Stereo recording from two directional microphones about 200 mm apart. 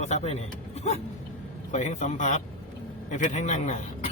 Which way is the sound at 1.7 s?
35° left (ahead or behind).